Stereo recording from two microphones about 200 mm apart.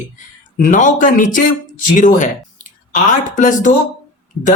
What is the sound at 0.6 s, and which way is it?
Speech, 40° left (ahead or behind).